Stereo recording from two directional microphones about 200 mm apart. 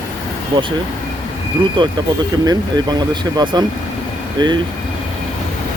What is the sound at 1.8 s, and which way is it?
Speech, 25° right (ahead or behind).